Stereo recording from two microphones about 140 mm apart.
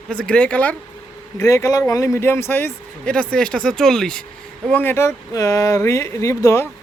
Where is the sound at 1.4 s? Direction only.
25° left (ahead or behind); by 4.2 s 5° left (ahead or behind).